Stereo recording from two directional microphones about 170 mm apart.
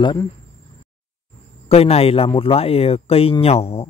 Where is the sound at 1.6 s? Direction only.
35° left (ahead or behind).